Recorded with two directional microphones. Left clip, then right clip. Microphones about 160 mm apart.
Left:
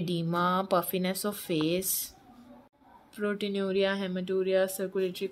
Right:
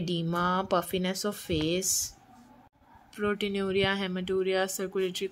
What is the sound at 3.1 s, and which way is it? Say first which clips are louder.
Speech: right 1 dB; 15° right (ahead or behind).